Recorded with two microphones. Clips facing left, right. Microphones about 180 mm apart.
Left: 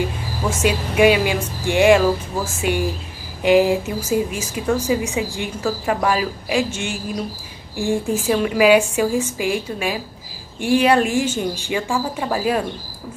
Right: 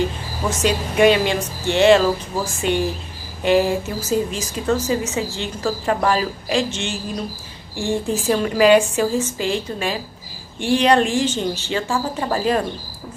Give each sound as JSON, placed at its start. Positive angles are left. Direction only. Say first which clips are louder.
{"t": 0.5, "sound": "a woman's voice", "louder": "even", "side_deg": 10}